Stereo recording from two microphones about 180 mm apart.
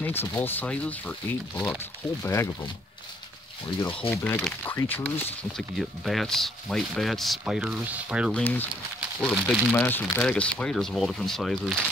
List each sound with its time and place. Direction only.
0.0 s speech: 10° left (ahead or behind)
3.8 s speech: 30° left (ahead or behind)
4.1 s speech: 10° left (ahead or behind)
8.3 s speech: 10° left (ahead or behind)